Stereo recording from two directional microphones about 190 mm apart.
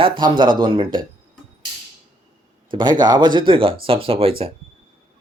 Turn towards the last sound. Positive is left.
turn(degrees=-30)  # may be behind; listen again after turning